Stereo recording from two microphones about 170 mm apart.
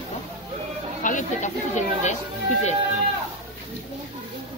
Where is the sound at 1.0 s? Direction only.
45° left (ahead or behind).